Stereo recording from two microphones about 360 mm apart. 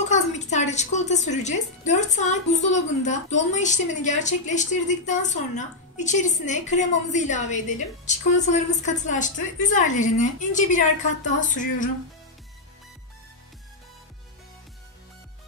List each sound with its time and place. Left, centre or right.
0.1 s a woman's voice: centre